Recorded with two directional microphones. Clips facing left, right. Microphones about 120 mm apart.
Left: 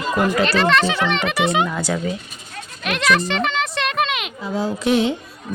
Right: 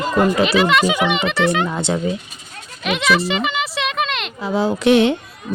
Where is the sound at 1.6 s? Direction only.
25° right (ahead or behind).